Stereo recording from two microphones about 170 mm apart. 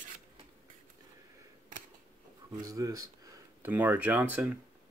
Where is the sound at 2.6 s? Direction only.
20° right (ahead or behind).